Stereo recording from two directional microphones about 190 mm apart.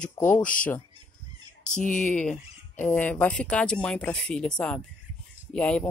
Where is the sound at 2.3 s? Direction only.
10° left (ahead or behind).